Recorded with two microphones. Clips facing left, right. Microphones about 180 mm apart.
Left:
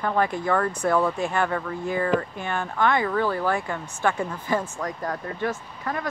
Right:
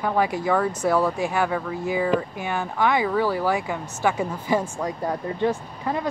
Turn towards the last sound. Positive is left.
turn(degrees=-15)  # may be behind; listen again after turning